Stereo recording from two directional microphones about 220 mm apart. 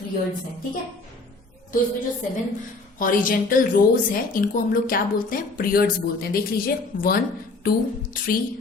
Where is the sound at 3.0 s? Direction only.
40° left (ahead or behind).